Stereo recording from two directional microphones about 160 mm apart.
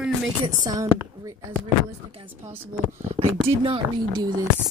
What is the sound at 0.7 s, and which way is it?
Speech, 20° right (ahead or behind).